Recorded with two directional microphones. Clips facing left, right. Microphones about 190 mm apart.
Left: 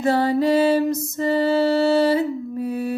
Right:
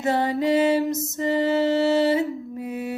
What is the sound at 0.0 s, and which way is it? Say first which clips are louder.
Music: left 4 dB; 20° right (ahead or behind).